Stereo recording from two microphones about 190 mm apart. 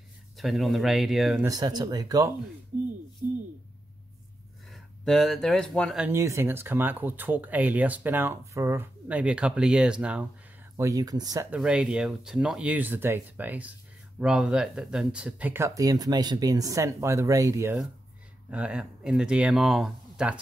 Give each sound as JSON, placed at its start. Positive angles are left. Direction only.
{"t": 0.4, "sound": "speech", "side_deg": 0}
{"t": 1.4, "sound": "speech", "side_deg": -20}
{"t": 4.6, "sound": "speech", "side_deg": 0}
{"t": 6.0, "sound": "speech", "side_deg": -15}
{"t": 10.8, "sound": "speech", "side_deg": -20}
{"t": 11.5, "sound": "speech", "side_deg": -5}
{"t": 18.5, "sound": "speech", "side_deg": -5}